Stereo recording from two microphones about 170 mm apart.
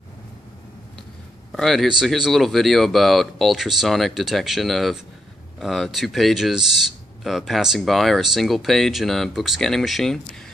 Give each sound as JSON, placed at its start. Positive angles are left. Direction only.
{"t": 1.5, "sound": "speech", "side_deg": 0}